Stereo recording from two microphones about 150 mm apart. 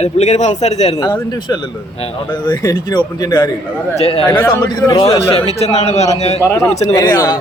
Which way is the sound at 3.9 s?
40° left (ahead or behind).